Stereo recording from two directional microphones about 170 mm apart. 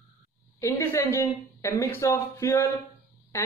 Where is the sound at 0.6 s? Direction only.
15° left (ahead or behind).